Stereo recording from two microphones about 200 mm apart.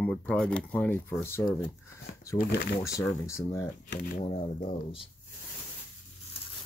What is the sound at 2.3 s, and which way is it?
Speech, 50° left (ahead or behind).